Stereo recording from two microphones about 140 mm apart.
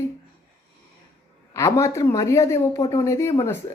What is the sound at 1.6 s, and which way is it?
Speech, 20° left (ahead or behind).